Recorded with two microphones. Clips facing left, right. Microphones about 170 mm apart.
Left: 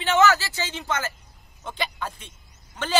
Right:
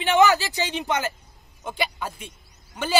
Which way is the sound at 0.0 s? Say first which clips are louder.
Right 2 dB; 15° right (ahead or behind).